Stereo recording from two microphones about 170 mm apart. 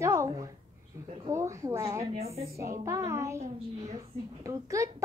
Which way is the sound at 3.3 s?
40° right (ahead or behind).